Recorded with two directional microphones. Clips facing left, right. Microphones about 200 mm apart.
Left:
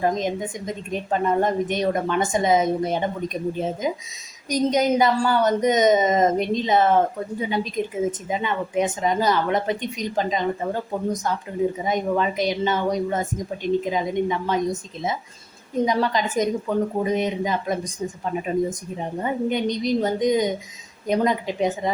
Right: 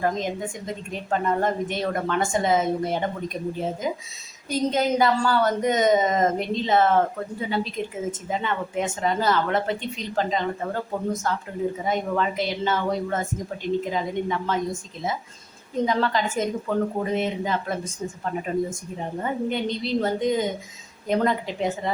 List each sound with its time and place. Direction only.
0.0 s a woman's voice: 20° left (ahead or behind)